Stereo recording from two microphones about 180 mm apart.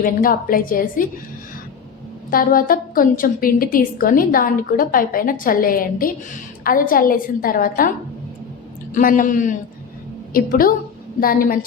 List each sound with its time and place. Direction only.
0.0 s a woman's voice: 50° left (ahead or behind)
2.3 s a woman's voice: 50° left (ahead or behind)